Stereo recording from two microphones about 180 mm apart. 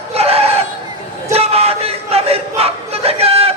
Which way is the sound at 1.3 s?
35° right (ahead or behind).